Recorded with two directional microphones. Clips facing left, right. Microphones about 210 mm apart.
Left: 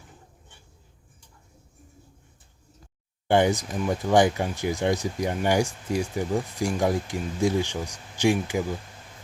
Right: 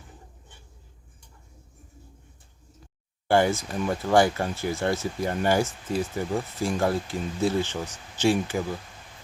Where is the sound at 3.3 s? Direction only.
20° left (ahead or behind).